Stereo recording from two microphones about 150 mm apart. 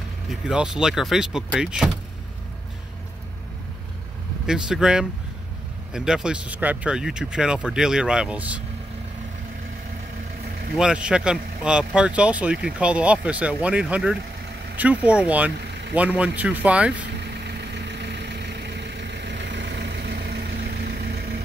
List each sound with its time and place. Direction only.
0.3 s speech: 5° right (ahead or behind)
4.5 s speech: 5° right (ahead or behind)
10.8 s speech: 5° right (ahead or behind)
19.8 s vehicle: 90° right